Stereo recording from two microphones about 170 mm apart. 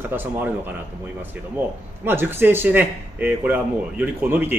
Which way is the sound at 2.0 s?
15° right (ahead or behind).